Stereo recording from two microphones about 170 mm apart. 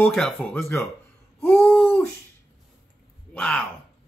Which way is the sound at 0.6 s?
15° left (ahead or behind).